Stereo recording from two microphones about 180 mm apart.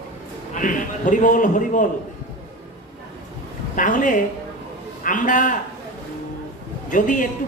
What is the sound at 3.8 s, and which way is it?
Speech, 45° left (ahead or behind).